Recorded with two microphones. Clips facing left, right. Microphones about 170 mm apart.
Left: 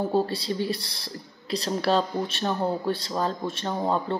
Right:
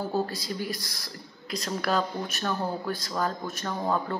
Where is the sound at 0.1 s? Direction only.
30° left (ahead or behind).